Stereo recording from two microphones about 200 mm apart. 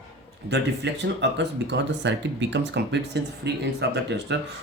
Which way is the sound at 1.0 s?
60° right (ahead or behind).